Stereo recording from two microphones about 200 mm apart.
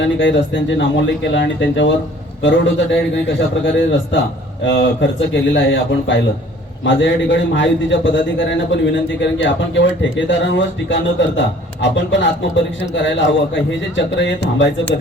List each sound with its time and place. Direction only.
0.0 s a man's voice: 65° left (ahead or behind)